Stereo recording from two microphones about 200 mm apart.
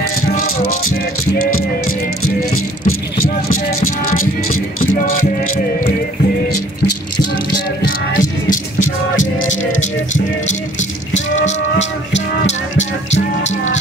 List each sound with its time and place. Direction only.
1.4 s music: 45° left (ahead or behind)
3.8 s music: 45° left (ahead or behind)
5.2 s music: 40° left (ahead or behind)
7.5 s music: 45° left (ahead or behind)
12.4 s music: 35° left (ahead or behind)